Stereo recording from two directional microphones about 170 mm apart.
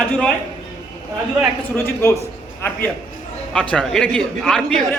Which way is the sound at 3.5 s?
5° left (ahead or behind).